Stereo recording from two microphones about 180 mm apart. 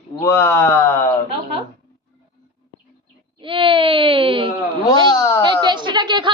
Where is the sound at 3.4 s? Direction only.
30° right (ahead or behind).